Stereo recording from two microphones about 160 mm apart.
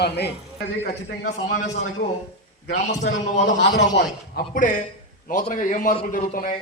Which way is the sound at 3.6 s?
90° left.